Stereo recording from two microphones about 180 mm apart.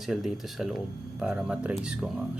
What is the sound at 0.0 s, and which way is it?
Speech, centre (ahead or behind).